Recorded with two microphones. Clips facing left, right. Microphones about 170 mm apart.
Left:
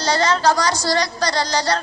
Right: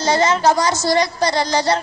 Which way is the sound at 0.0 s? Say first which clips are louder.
Right 2 dB; 20° right (ahead or behind).